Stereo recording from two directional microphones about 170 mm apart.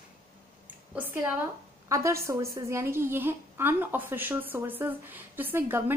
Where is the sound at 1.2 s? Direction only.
15° right (ahead or behind).